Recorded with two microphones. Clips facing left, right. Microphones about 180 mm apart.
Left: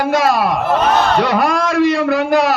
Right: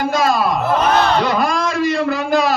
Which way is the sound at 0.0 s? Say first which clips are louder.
Left 2 dB; 65° left (ahead or behind).